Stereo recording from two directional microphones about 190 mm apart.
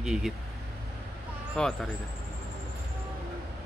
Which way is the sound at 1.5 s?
5° left (ahead or behind).